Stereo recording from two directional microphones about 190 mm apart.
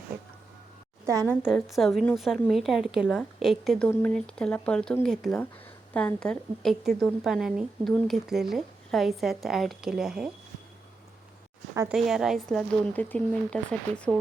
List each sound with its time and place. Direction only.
1.0 s a woman's voice: 15° right (ahead or behind)
1.4 s a woman's voice: centre (ahead or behind)
11.9 s a woman's voice: centre (ahead or behind)